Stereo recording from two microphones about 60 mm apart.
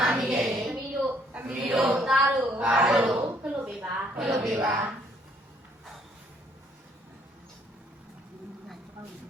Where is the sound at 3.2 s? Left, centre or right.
Right.